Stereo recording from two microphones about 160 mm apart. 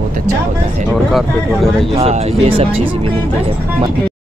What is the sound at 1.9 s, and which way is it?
Speech, 40° right (ahead or behind).